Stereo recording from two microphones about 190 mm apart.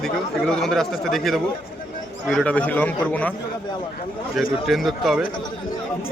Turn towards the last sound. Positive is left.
turn(degrees=0)  # may be behind; listen again after turning